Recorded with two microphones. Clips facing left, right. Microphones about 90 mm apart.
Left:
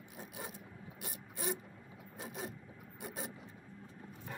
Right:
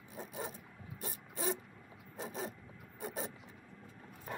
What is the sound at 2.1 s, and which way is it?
Zipper, 35° right (ahead or behind).